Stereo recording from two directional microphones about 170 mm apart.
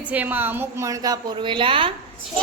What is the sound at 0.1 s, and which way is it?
A woman's voice, 10° right (ahead or behind).